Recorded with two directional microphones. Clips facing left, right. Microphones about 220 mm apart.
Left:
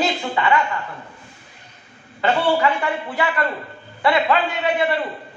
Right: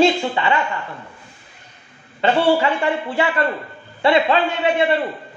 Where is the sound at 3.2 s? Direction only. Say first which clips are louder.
Right 2 dB; 25° right (ahead or behind).